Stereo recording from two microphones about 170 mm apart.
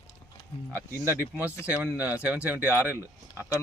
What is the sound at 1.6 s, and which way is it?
Speech, 10° right (ahead or behind).